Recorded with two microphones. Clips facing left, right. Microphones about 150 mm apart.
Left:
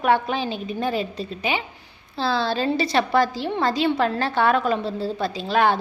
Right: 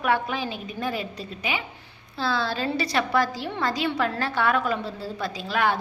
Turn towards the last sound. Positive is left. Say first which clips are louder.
# left 5 dB
turn(degrees=30)  # may be behind; listen again after turning